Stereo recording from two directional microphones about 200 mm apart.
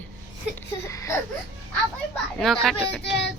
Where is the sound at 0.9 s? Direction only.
15° left (ahead or behind).